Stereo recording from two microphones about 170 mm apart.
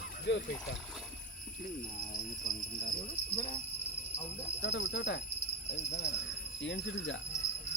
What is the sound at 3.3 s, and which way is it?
Speech, 35° left (ahead or behind).